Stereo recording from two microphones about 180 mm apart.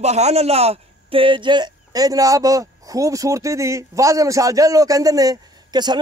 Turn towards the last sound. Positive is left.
turn(degrees=-25)  # may be behind; listen again after turning